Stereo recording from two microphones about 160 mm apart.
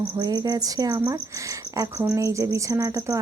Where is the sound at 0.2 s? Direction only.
25° right (ahead or behind).